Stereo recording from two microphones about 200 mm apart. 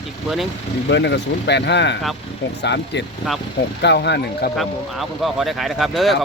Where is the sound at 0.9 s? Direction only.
60° left (ahead or behind).